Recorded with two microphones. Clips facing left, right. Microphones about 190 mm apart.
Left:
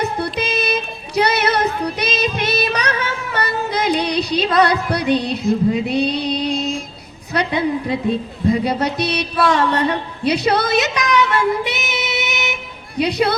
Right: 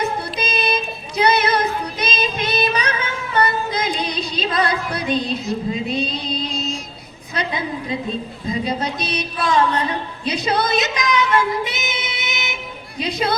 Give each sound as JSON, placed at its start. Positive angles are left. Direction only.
{"t": 0.2, "sound": "child singing", "side_deg": 65}
{"t": 3.3, "sound": "music", "side_deg": 65}
{"t": 7.3, "sound": "a woman's voice", "side_deg": 65}
{"t": 8.4, "sound": "a sound", "side_deg": 65}
{"t": 13.0, "sound": "speech", "side_deg": 65}